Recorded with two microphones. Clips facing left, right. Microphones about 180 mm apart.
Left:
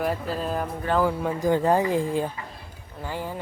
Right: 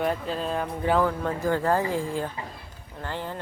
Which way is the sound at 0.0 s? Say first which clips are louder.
Even; 5° left (ahead or behind).